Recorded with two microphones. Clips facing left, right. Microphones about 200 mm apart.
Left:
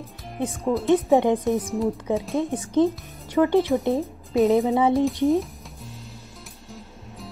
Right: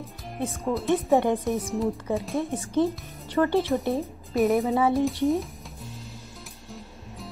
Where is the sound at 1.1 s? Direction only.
15° left (ahead or behind).